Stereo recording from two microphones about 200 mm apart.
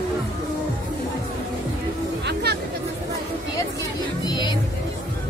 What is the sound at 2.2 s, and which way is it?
Music, 55° right (ahead or behind).